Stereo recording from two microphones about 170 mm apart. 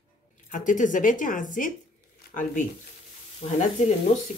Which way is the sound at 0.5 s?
50° left (ahead or behind).